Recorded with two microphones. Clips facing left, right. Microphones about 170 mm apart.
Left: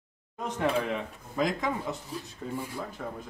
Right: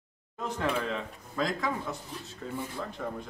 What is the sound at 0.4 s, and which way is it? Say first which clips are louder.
Speech: left 2 dB; 15° left (ahead or behind).